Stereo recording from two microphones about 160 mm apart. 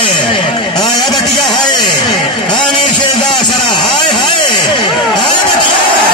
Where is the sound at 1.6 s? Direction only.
25° left (ahead or behind).